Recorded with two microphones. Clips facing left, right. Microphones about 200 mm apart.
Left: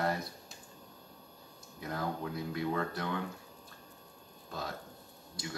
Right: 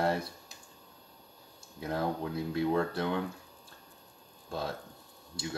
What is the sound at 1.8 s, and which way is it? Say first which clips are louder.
Speech: right 4 dB; 30° right (ahead or behind).